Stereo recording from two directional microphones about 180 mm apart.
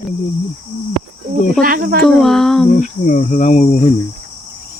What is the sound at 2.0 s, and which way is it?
Speech, centre (ahead or behind).